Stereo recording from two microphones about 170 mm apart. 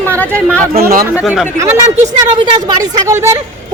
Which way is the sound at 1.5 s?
15° right (ahead or behind).